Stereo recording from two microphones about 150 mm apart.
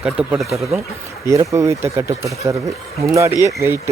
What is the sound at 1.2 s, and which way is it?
Speech, 20° right (ahead or behind).